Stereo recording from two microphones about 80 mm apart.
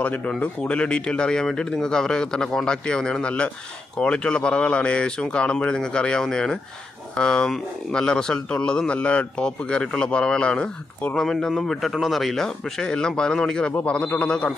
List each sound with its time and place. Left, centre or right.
0.0 s speech: centre